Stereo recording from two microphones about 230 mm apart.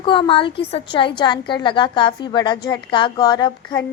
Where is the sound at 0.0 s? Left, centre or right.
Left.